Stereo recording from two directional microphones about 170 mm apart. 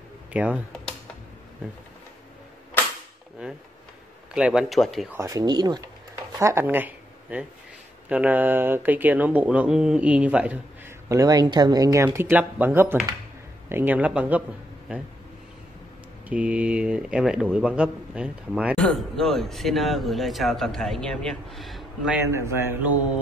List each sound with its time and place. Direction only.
0.3 s speech: 5° right (ahead or behind)
4.3 s speech: 5° right (ahead or behind)
5.1 s speech: 20° right (ahead or behind)
11.1 s speech: 20° right (ahead or behind)
16.3 s speech: 5° right (ahead or behind)
22.3 s speech: 15° right (ahead or behind)